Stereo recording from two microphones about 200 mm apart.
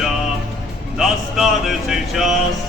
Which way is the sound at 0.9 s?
Centre (ahead or behind).